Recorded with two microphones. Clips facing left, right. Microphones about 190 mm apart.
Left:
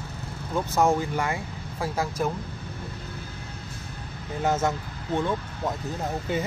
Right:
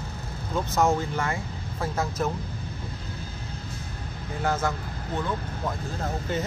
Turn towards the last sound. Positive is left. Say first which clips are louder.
# left 1 dB
turn(degrees=10)  # may be behind; listen again after turning